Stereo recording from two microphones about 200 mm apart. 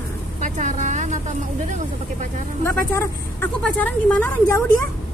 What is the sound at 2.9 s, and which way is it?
A woman's voice, 10° left (ahead or behind).